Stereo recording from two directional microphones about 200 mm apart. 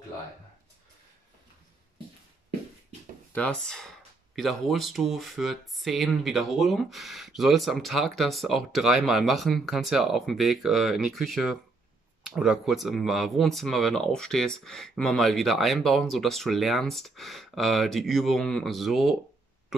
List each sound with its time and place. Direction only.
3.3 s speech: 5° left (ahead or behind)